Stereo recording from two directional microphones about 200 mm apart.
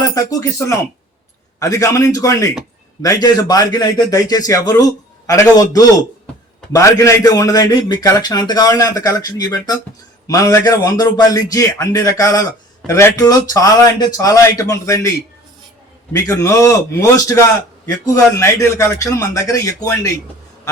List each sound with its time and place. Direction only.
0.1 s a man's voice: 15° left (ahead or behind)
16.1 s a man's voice: 15° left (ahead or behind)